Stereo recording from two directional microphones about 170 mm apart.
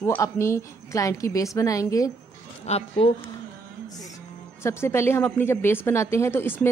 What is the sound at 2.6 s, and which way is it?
Speech, 35° left (ahead or behind).